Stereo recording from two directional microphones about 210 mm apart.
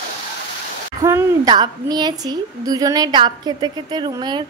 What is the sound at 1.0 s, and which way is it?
A woman's voice, 15° right (ahead or behind).